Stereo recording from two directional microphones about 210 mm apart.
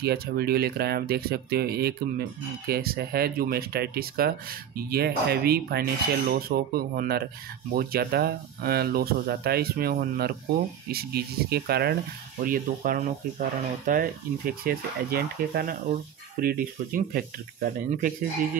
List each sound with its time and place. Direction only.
0.0 s speech: 50° right (ahead or behind)